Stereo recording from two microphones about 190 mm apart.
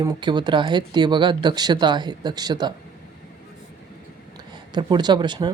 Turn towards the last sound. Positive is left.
turn(degrees=-25)  # may be behind; listen again after turning